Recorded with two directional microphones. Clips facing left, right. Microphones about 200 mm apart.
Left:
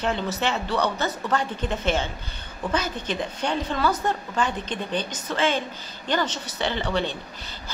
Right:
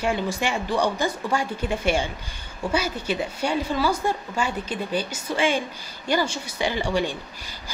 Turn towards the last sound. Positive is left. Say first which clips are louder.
# right 2 dB
turn(degrees=-10)  # may be behind; listen again after turning